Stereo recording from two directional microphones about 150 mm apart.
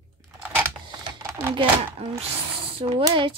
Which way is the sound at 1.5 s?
35° right (ahead or behind).